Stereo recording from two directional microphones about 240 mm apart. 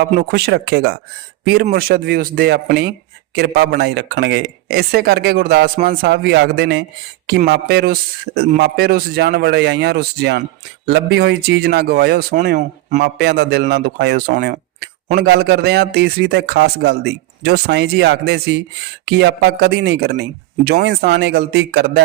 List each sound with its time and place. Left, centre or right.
0.0 s speech: right
13.0 s speech: right